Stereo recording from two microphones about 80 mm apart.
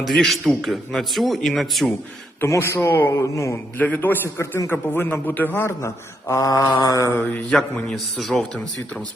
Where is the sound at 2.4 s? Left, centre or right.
Left.